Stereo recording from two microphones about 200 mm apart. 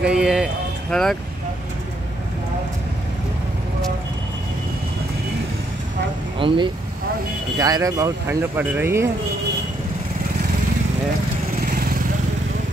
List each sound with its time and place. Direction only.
0.1 s a sound: 5° right (ahead or behind)
6.4 s speech: 25° right (ahead or behind)
11.6 s lawn mower: 45° right (ahead or behind)